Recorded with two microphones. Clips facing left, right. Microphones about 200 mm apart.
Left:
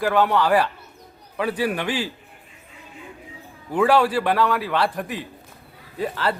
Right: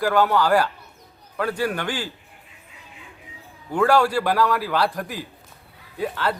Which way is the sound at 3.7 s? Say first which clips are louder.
Even; 5° left (ahead or behind).